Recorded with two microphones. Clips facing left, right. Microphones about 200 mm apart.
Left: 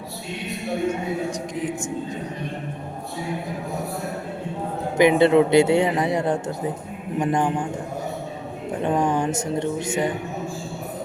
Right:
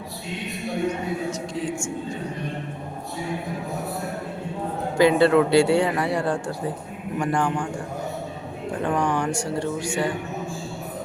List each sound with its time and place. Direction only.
0.9 s a woman's voice: 15° left (ahead or behind)
4.9 s speech: 20° left (ahead or behind)
8.8 s speech: 20° left (ahead or behind)